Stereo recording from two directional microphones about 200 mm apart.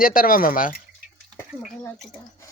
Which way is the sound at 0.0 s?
45° left (ahead or behind).